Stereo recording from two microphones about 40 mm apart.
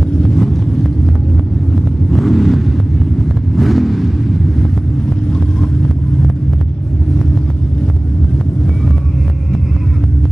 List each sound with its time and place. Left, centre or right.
0.2 s vehicle: centre
2.0 s vehicle: centre